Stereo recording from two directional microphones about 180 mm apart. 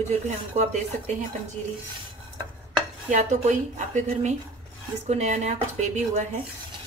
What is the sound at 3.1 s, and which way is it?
A woman's voice, 45° right (ahead or behind).